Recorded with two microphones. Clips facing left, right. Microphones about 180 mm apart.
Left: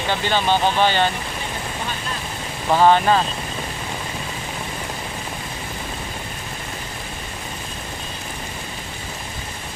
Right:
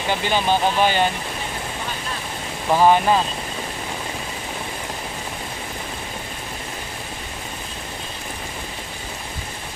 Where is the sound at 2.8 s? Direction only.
10° right (ahead or behind).